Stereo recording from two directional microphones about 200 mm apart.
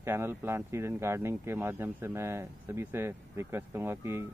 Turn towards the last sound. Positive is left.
turn(degrees=-10)  # may be behind; listen again after turning